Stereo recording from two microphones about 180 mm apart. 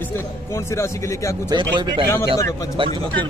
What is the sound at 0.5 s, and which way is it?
Speech, 15° left (ahead or behind).